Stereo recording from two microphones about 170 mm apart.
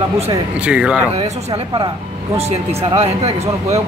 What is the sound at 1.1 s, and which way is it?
Speech, 30° right (ahead or behind).